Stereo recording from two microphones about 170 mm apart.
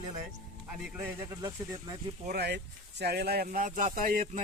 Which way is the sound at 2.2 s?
70° right (ahead or behind).